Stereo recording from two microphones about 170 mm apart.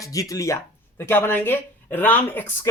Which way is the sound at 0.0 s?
20° left (ahead or behind).